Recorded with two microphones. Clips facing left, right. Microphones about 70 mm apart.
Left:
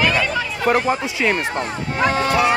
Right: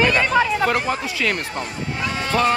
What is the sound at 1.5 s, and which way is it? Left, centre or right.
Speech, left.